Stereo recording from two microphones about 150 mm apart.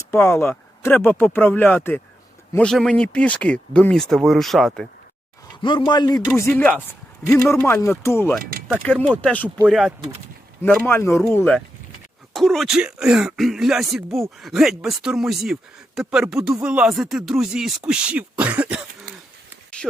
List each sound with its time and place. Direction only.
0.0 s speech: 15° left (ahead or behind)
5.6 s speech: 30° left (ahead or behind)
8.4 s speech: 80° right
8.8 s speech: 10° left (ahead or behind)
10.6 s speech: 10° left (ahead or behind); by 18.9 s 10° right (ahead or behind)
19.8 s a sound: 5° left (ahead or behind)